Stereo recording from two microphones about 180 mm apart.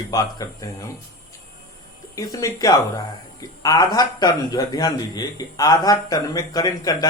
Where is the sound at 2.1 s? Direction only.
20° left (ahead or behind).